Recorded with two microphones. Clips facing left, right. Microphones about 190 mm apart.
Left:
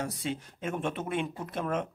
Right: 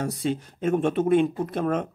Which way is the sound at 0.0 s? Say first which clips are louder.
Right 7 dB; 40° right (ahead or behind).